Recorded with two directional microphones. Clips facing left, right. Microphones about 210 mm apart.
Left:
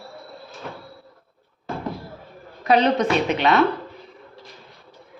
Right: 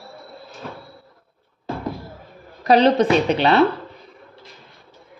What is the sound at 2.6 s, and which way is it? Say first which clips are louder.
A woman's voice: right 3 dB; 35° right (ahead or behind).